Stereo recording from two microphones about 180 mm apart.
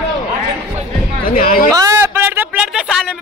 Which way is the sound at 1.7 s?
15° right (ahead or behind).